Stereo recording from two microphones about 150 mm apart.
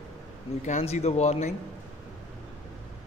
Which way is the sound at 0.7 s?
50° left (ahead or behind).